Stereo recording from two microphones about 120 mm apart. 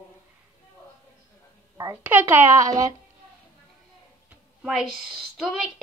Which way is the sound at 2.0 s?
15° right (ahead or behind).